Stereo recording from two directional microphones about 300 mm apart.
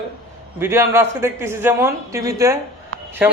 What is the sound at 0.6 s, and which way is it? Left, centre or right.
A man's voice, centre.